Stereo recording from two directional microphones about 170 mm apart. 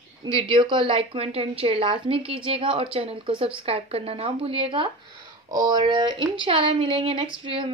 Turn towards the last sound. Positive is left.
turn(degrees=-30)  # may be behind; listen again after turning